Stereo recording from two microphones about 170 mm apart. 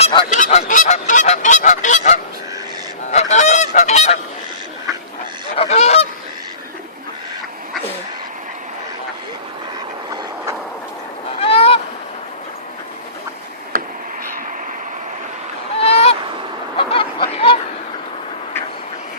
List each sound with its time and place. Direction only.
0.0 s goose: 30° left (ahead or behind)
0.3 s honk: 45° left (ahead or behind)
3.7 s goose: 45° left (ahead or behind)
5.5 s goose: 40° left (ahead or behind)
11.3 s goose: 35° left (ahead or behind)
13.7 s a sound: 55° right (ahead or behind)
15.8 s honk: 35° left (ahead or behind)
16.7 s snicker: 30° left (ahead or behind)